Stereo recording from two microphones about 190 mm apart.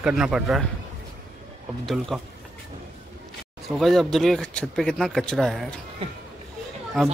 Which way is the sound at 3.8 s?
Centre (ahead or behind).